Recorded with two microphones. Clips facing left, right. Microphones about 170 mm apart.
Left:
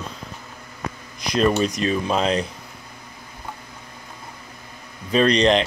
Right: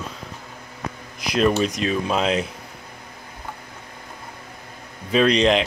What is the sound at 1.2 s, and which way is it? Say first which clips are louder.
Speech: even; 5° right (ahead or behind).